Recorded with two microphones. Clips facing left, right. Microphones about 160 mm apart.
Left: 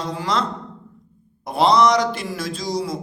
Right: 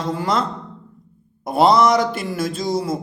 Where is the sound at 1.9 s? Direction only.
50° right (ahead or behind).